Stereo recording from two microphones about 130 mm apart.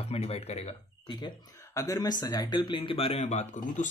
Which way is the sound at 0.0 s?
50° left (ahead or behind).